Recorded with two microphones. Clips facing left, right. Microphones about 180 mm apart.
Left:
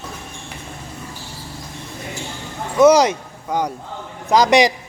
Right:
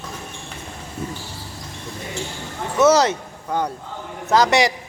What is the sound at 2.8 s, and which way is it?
A man's voice, 15° left (ahead or behind).